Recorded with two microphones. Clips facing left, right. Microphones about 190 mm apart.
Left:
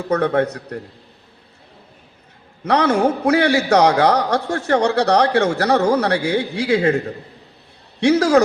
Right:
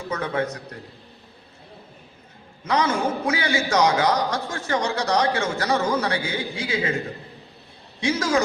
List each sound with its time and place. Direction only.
0.1 s a man's voice: 60° left (ahead or behind)
2.6 s a man's voice: 65° left (ahead or behind)
8.0 s a man's voice: 65° left (ahead or behind)